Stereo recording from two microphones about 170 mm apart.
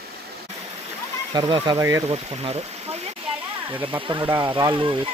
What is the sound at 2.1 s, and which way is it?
Speech, 35° right (ahead or behind).